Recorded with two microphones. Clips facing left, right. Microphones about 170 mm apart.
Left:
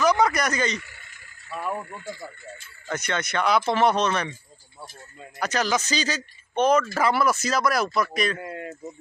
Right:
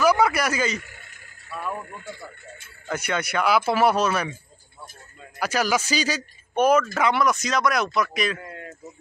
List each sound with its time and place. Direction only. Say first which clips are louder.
0.0 s a sound: right 1 dB; 10° right (ahead or behind)
0.7 s frog: right 1 dB; 50° right (ahead or behind)
2.9 s speech: right 1 dB; 10° right (ahead or behind)
5.4 s speech: right 1 dB; 10° right (ahead or behind)
6.9 s speech: even; centre (ahead or behind)
8.4 s speech: left 5 dB; 20° left (ahead or behind)